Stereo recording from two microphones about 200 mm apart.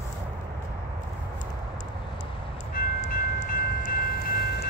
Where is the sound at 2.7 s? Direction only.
40° left (ahead or behind).